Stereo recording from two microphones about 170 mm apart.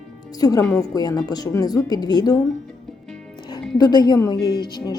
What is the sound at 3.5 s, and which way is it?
Speech, 25° left (ahead or behind).